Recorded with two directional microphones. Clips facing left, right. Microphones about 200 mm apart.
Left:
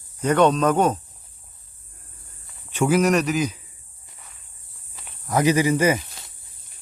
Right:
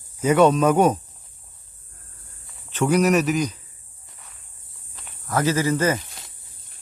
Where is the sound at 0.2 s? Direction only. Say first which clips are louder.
Right 2 dB; 5° right (ahead or behind).